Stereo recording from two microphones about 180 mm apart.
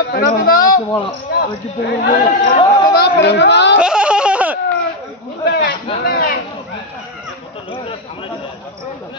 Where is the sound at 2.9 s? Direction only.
65° left (ahead or behind).